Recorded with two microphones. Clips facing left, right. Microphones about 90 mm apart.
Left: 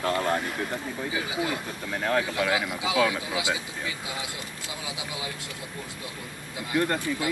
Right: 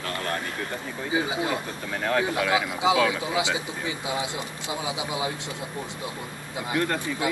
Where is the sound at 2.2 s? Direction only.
25° right (ahead or behind).